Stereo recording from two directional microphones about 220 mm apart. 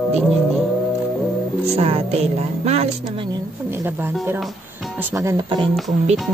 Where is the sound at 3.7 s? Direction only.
10° right (ahead or behind).